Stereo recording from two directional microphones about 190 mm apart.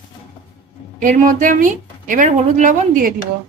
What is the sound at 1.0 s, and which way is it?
Speech, 45° right (ahead or behind).